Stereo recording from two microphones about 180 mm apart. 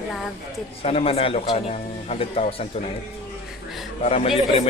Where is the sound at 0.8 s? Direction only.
35° left (ahead or behind).